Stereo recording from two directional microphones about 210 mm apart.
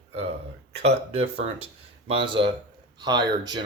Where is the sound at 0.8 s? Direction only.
30° right (ahead or behind).